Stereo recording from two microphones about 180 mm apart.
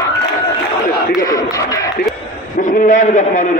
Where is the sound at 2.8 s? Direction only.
45° left (ahead or behind).